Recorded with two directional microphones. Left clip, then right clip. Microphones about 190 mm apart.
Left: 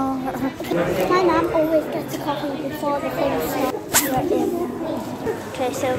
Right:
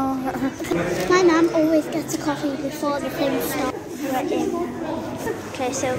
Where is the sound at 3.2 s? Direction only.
45° right (ahead or behind).